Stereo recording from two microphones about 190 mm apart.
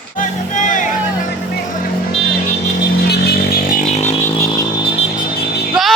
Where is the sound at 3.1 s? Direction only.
55° left (ahead or behind); by 4.2 s 35° left (ahead or behind).